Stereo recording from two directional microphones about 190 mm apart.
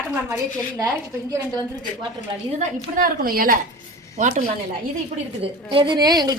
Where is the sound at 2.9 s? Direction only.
50° right (ahead or behind).